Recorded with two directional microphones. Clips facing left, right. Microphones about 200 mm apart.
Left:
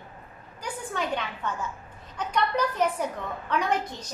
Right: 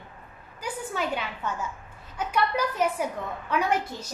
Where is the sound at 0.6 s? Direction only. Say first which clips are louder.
Right 1 dB; 10° right (ahead or behind).